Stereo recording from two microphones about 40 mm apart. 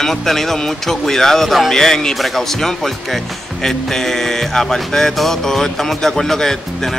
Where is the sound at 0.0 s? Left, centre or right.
Centre.